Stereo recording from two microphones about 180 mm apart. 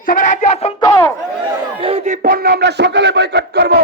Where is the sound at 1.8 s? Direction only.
35° right (ahead or behind).